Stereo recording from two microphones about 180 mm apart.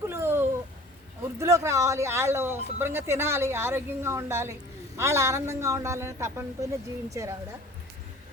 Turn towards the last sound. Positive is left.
turn(degrees=-15)  # may be behind; listen again after turning